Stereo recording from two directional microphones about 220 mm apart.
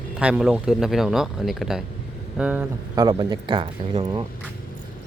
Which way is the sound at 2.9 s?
20° right (ahead or behind).